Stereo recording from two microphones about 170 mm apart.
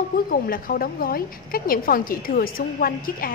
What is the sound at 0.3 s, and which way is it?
A woman's voice, 60° left (ahead or behind).